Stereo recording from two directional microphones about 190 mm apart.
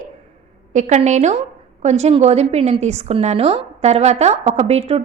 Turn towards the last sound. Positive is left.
turn(degrees=-30)  # may be behind; listen again after turning